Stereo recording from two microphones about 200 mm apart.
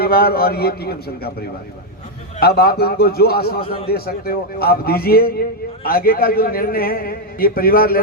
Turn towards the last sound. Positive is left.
turn(degrees=45)  # may be behind; listen again after turning